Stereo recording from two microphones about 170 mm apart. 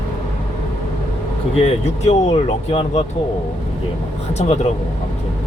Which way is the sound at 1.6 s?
40° left (ahead or behind).